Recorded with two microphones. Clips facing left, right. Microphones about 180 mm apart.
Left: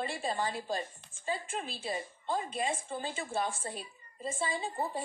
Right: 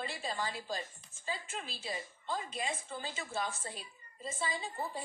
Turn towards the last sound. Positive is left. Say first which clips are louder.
# left 4 dB
turn(degrees=50)  # may be behind; listen again after turning